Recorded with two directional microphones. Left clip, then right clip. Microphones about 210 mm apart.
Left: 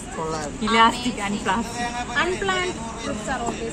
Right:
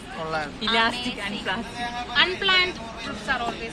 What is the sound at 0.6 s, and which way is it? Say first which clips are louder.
A woman's voice: left 6 dB; 40° left (ahead or behind).